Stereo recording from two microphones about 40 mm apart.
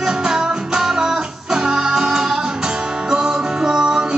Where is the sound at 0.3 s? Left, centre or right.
Centre.